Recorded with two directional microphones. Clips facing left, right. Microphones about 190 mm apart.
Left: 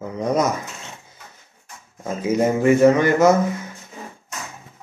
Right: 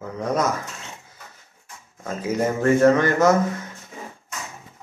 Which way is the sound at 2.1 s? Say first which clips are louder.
Left 4 dB; 15° left (ahead or behind).